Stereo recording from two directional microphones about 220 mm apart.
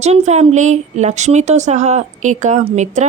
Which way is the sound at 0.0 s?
30° right (ahead or behind).